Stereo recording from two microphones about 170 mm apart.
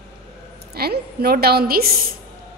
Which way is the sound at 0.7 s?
65° right (ahead or behind).